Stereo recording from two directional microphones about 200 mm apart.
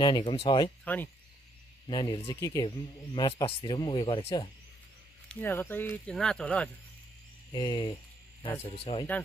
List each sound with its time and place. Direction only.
0.0 s speech: 20° left (ahead or behind)
0.9 s speech: 10° left (ahead or behind)
1.9 s speech: 20° left (ahead or behind)
5.3 s speech: 10° left (ahead or behind)
7.5 s speech: 20° left (ahead or behind)